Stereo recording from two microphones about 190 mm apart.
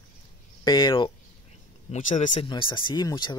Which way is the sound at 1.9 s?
40° left (ahead or behind).